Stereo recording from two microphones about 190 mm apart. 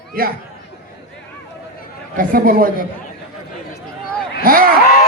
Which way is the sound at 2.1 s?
50° right (ahead or behind).